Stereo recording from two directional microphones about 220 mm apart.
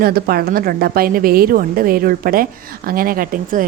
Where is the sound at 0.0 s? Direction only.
45° right (ahead or behind).